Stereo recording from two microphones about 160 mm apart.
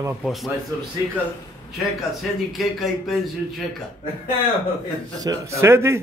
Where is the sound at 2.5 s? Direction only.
Centre (ahead or behind).